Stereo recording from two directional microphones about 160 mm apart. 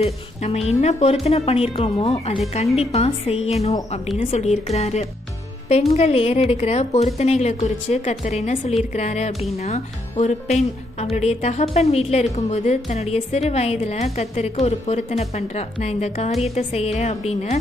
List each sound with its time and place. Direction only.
0.0 s a woman's voice: 40° left (ahead or behind)